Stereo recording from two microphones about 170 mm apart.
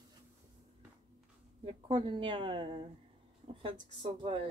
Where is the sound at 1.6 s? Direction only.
30° right (ahead or behind).